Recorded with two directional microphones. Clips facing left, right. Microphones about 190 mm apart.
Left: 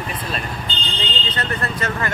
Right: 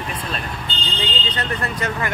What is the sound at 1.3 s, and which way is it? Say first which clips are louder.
Speech: left 2 dB; 15° right (ahead or behind).